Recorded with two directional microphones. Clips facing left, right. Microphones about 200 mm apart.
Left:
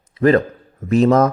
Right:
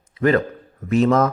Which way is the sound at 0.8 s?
35° left (ahead or behind).